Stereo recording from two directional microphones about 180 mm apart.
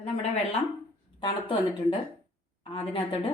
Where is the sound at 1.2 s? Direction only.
30° left (ahead or behind).